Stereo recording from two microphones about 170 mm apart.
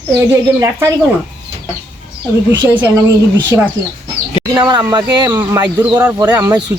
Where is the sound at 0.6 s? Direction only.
20° right (ahead or behind).